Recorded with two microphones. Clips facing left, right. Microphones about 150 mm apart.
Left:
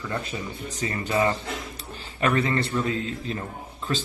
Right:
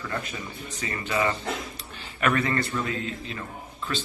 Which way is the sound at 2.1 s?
25° left (ahead or behind).